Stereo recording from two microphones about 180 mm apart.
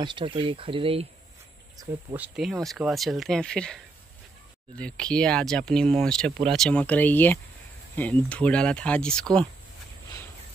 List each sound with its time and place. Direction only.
0.0 s speech: 30° right (ahead or behind)
1.8 s speech: 20° right (ahead or behind)
2.1 s speech: 5° right (ahead or behind)